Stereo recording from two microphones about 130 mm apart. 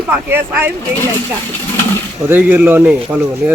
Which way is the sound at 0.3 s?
15° right (ahead or behind).